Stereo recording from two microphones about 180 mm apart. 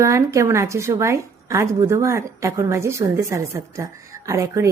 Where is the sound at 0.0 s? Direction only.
15° right (ahead or behind).